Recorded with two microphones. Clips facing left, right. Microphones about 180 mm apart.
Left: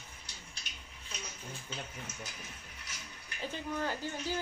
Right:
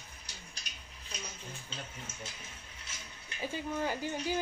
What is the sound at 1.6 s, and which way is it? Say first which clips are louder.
Speech: left 4 dB; 30° right (ahead or behind).